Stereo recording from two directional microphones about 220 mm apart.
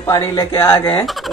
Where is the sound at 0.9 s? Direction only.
5° left (ahead or behind).